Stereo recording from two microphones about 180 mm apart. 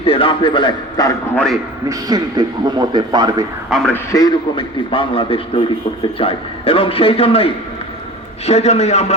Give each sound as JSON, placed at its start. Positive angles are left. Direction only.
{"t": 0.0, "sound": "a man's voice", "side_deg": 30}
{"t": 1.9, "sound": "speech", "side_deg": -20}
{"t": 3.7, "sound": "speech", "side_deg": 0}
{"t": 3.9, "sound": "a man's voice", "side_deg": 20}